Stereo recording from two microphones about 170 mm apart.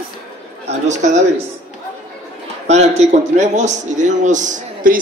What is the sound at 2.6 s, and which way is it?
A man's voice, 40° right (ahead or behind).